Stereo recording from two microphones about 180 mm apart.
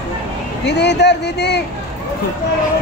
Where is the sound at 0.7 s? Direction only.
70° left (ahead or behind).